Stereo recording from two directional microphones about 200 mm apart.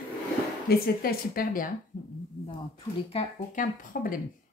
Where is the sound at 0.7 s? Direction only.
45° left (ahead or behind).